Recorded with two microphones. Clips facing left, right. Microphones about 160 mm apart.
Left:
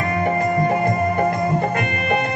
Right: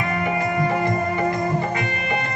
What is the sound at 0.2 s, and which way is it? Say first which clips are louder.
Music: left 4 dB; 45° left (ahead or behind).